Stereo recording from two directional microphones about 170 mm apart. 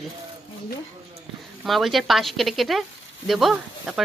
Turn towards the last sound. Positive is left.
turn(degrees=0)  # may be behind; listen again after turning